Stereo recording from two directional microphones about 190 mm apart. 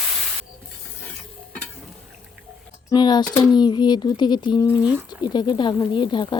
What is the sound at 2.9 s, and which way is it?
Speech, 20° left (ahead or behind).